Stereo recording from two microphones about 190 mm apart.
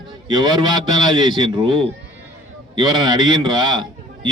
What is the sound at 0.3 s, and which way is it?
A man's voice, 25° right (ahead or behind).